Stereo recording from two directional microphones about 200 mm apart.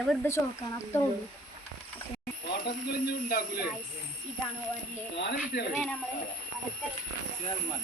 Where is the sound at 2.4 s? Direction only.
55° left (ahead or behind).